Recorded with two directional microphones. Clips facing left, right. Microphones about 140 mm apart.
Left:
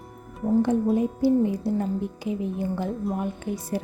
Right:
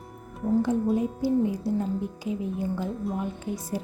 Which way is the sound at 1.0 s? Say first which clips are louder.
Left 3 dB; 60° left (ahead or behind).